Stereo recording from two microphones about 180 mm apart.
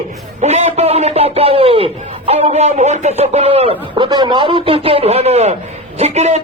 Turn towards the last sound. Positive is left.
turn(degrees=-40)  # may be behind; listen again after turning